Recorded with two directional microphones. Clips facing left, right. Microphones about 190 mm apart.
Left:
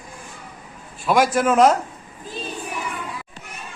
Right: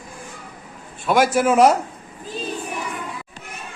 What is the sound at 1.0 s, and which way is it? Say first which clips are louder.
Speech: right 1 dB; centre (ahead or behind).